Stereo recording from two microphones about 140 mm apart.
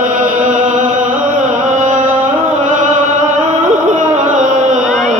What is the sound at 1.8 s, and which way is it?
Music, 65° right (ahead or behind).